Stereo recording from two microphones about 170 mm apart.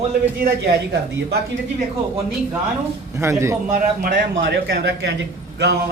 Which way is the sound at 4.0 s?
60° right (ahead or behind).